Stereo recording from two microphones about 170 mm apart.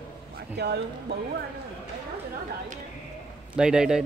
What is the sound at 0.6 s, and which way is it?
Speech, 75° right (ahead or behind).